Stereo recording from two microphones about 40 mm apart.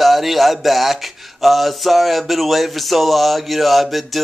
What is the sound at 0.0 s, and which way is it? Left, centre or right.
Speech, centre.